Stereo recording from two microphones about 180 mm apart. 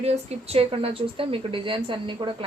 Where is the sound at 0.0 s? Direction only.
35° right (ahead or behind).